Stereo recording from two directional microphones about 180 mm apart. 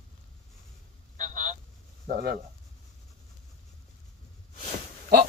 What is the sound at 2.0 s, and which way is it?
Speech, 50° right (ahead or behind).